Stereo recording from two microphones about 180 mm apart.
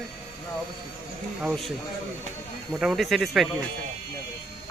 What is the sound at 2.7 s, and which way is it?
Speech, centre (ahead or behind).